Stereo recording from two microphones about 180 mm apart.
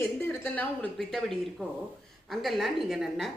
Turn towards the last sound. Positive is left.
turn(degrees=0)  # may be behind; listen again after turning